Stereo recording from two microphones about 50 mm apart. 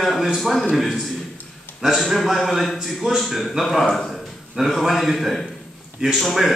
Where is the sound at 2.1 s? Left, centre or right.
Centre.